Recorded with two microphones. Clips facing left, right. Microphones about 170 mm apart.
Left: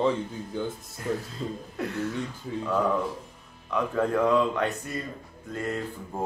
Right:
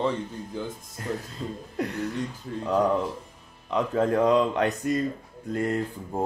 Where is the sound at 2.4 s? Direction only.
5° left (ahead or behind).